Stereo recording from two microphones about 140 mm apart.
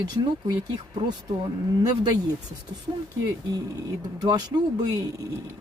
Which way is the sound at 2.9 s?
35° right (ahead or behind).